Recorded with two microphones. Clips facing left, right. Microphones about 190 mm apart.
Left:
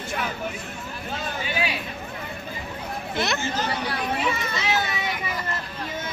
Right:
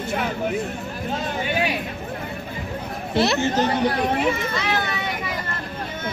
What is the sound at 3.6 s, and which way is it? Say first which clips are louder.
Speech: right 7 dB; 45° right (ahead or behind).